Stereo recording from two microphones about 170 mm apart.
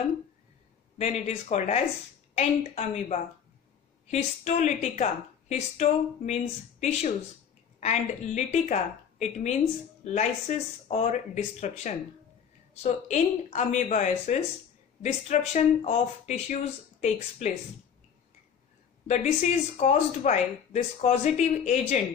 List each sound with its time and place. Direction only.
0.9 s a woman's voice: 40° left (ahead or behind)
19.0 s a woman's voice: 45° left (ahead or behind)